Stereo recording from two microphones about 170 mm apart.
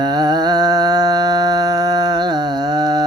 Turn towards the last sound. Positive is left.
turn(degrees=-25)  # may be behind; listen again after turning